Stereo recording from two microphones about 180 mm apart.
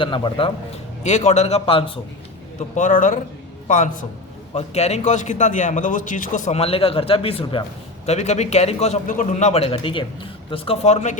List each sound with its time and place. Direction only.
0.0 s a man's voice: 30° left (ahead or behind)
1.0 s a man's voice: 40° left (ahead or behind)
2.7 s a man's voice: 45° left (ahead or behind)
4.5 s a man's voice: 35° left (ahead or behind)